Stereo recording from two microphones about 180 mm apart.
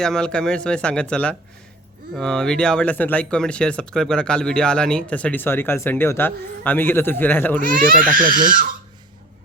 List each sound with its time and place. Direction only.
0.0 s speech: 5° left (ahead or behind)
7.6 s speech: 50° right (ahead or behind)